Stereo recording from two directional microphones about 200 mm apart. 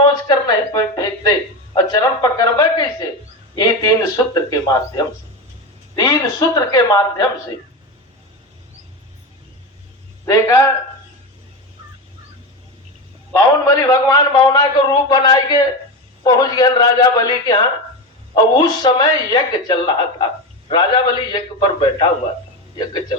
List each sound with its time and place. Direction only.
0.0 s a sound: 20° left (ahead or behind)
1.7 s a man's voice: 20° left (ahead or behind)
3.5 s a sound: 20° left (ahead or behind)
6.0 s speech: 15° left (ahead or behind)
10.2 s speech: 15° left (ahead or behind)
13.3 s a man's voice: 15° left (ahead or behind)